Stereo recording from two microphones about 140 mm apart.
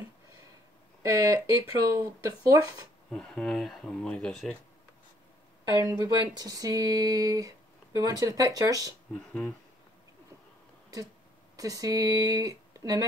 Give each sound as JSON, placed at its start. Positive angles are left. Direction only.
{"t": 1.0, "sound": "speech", "side_deg": -25}
{"t": 3.1, "sound": "speech", "side_deg": 5}
{"t": 5.8, "sound": "speech", "side_deg": -20}
{"t": 9.1, "sound": "speech", "side_deg": 10}
{"t": 11.5, "sound": "speech", "side_deg": -25}